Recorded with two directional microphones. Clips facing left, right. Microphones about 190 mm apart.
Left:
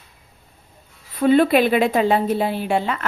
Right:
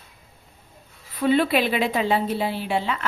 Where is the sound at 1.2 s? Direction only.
45° left (ahead or behind).